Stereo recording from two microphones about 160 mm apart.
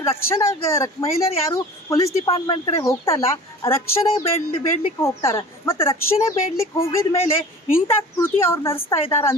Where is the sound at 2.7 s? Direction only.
20° left (ahead or behind).